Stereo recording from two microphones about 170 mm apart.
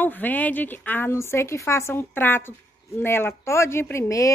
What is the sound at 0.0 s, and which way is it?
A woman's voice, 10° left (ahead or behind).